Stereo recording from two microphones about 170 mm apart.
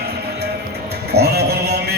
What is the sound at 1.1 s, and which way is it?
Music, 70° right (ahead or behind).